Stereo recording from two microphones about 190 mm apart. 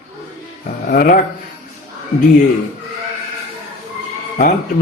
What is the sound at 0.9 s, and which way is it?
Speech, 50° left (ahead or behind).